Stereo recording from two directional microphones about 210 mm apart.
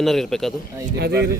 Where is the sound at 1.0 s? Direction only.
50° right (ahead or behind).